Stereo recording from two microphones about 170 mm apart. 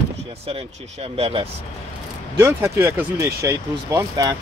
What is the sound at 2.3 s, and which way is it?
Speech, 15° right (ahead or behind).